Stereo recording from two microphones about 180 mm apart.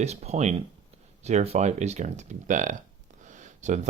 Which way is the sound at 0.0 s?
35° right (ahead or behind).